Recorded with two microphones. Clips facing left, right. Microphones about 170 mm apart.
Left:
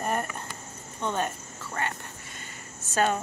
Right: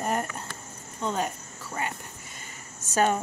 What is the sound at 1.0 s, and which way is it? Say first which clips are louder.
Cricket: even; 5° right (ahead or behind).